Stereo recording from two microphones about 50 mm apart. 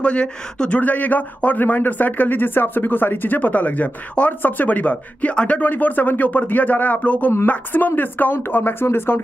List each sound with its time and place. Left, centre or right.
0.0 s speech: left
4.3 s speech: left
5.3 s speech: centre
5.6 s speech: left